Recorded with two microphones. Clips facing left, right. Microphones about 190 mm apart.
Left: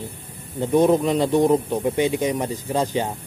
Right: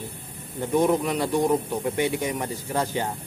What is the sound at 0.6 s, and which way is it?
Speech, 20° left (ahead or behind).